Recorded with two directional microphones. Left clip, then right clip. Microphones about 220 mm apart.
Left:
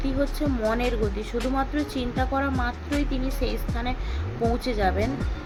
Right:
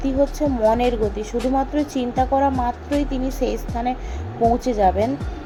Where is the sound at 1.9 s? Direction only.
15° right (ahead or behind).